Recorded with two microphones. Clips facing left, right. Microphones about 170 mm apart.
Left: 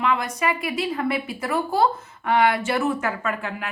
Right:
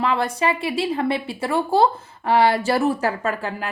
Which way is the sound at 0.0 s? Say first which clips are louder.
Right 2 dB; 30° right (ahead or behind).